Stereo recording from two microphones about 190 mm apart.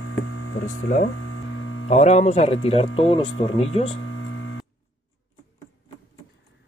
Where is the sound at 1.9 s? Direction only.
35° left (ahead or behind).